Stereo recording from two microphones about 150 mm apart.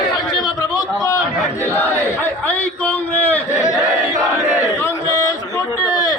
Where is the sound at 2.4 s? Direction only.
10° left (ahead or behind).